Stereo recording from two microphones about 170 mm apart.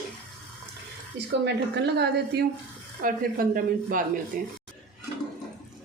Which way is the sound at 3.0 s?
55° right (ahead or behind).